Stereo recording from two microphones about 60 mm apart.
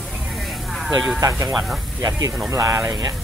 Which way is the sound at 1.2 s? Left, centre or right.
Right.